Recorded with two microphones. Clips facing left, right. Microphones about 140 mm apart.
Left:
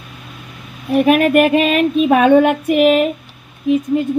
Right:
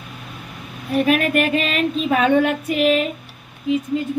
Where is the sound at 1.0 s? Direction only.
50° left (ahead or behind).